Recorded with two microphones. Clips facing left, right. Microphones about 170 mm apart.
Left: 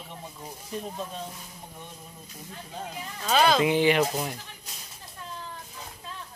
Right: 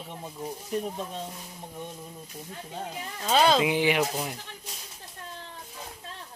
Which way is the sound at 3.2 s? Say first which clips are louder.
Even; 25° right (ahead or behind).